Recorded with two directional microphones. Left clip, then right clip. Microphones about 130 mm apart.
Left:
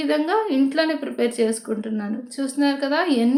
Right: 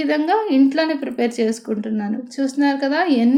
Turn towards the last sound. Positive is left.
turn(degrees=-20)  # may be behind; listen again after turning